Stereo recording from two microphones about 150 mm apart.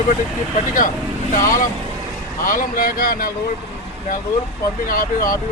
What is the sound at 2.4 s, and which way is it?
Speech, 70° left (ahead or behind).